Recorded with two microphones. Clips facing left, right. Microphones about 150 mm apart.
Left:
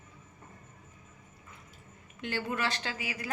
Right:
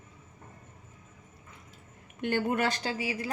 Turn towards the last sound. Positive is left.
turn(degrees=-30)  # may be behind; listen again after turning